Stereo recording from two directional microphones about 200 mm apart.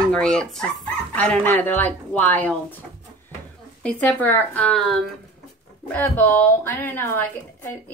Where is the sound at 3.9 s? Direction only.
10° left (ahead or behind).